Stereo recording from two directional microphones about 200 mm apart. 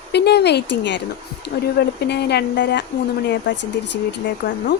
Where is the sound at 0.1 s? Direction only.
55° left (ahead or behind).